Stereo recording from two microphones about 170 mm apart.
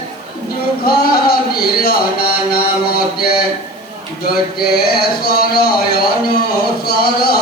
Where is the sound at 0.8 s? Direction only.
65° left (ahead or behind).